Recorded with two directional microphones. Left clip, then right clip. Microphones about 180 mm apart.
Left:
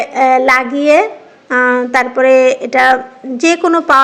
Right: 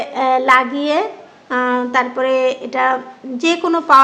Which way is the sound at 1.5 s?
25° left (ahead or behind).